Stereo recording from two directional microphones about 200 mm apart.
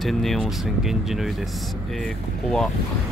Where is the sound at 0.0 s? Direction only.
Centre (ahead or behind).